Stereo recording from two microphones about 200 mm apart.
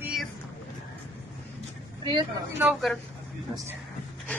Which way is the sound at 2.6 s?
5° right (ahead or behind).